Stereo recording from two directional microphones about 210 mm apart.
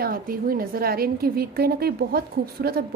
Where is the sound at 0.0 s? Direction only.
45° right (ahead or behind).